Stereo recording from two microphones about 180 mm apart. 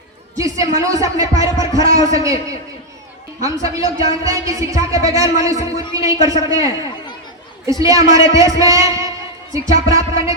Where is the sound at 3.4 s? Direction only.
20° right (ahead or behind).